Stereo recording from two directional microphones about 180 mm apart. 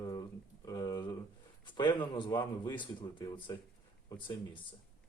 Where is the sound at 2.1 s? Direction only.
25° left (ahead or behind).